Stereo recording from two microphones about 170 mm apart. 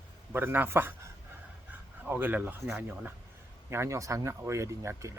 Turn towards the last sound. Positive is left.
turn(degrees=-15)  # may be behind; listen again after turning